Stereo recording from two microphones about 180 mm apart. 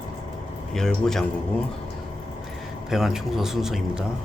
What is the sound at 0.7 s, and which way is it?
Speech, 5° left (ahead or behind).